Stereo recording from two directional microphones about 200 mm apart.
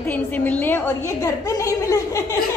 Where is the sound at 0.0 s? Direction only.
10° left (ahead or behind).